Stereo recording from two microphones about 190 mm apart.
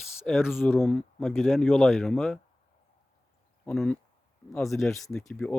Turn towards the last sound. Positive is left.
turn(degrees=5)  # may be behind; listen again after turning